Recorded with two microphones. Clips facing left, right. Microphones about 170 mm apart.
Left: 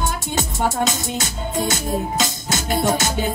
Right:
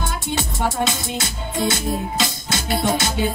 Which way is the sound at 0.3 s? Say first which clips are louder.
Even; 45° left (ahead or behind).